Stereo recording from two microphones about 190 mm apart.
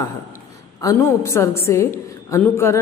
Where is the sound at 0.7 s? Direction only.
15° left (ahead or behind).